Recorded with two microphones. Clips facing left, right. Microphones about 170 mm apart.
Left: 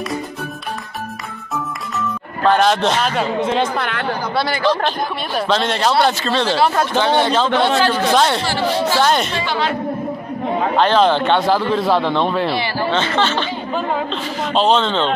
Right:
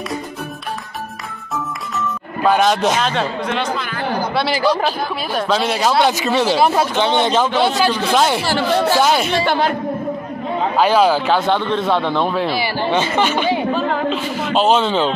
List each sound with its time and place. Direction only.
2.4 s speech: 5° right (ahead or behind)
3.0 s a man's voice: 5° left (ahead or behind)
3.5 s speech: 55° left (ahead or behind)
4.6 s speech: 5° right (ahead or behind)
9.5 s speech: 50° right (ahead or behind)
10.8 s a man's voice: 5° right (ahead or behind)
12.7 s speech: 15° right (ahead or behind)
14.0 s a sound: 5° right (ahead or behind)